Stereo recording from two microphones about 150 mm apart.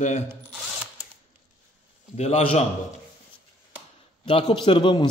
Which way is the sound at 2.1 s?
45° left (ahead or behind).